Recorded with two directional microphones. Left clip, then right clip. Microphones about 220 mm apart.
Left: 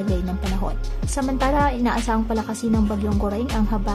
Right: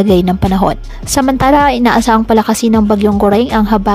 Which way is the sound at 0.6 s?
40° right (ahead or behind).